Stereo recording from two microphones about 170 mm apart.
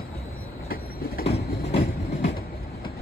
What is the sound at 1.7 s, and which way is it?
Train, 35° left (ahead or behind).